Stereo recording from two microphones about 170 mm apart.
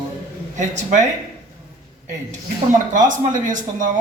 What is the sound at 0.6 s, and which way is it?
Speech, 45° right (ahead or behind).